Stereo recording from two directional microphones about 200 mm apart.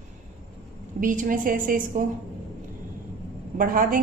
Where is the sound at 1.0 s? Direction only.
45° right (ahead or behind).